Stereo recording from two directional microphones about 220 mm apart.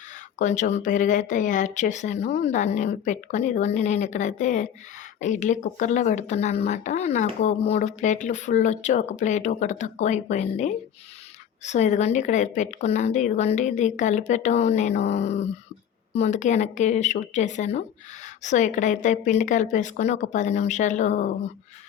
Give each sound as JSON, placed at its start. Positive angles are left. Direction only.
{"t": 0.3, "sound": "speech", "side_deg": 35}